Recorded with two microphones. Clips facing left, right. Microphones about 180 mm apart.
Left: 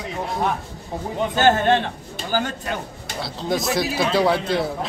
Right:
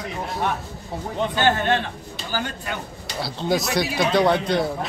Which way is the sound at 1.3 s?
45° left (ahead or behind).